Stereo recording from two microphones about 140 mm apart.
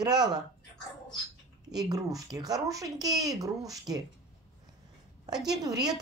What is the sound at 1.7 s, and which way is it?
Speech, 25° right (ahead or behind).